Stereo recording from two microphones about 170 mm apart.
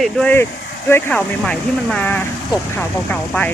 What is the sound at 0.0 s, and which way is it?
Speech, 10° left (ahead or behind).